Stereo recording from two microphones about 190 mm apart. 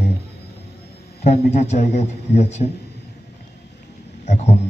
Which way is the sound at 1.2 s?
35° left (ahead or behind).